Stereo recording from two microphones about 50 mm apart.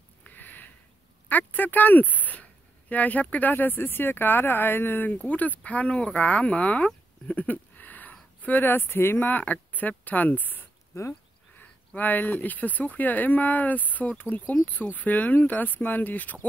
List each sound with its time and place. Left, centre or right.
0.2 s a sound: left
1.3 s speech: left
9.3 s speech: left